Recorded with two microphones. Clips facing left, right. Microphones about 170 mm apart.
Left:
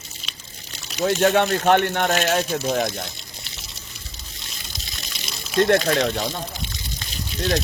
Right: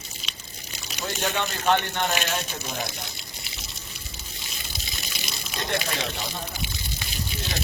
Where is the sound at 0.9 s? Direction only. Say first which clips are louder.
Left 11 dB; 65° left (ahead or behind).